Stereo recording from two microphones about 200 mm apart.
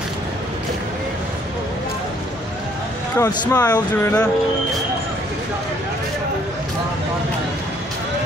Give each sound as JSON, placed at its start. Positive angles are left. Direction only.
{"t": 3.2, "sound": "speech", "side_deg": 20}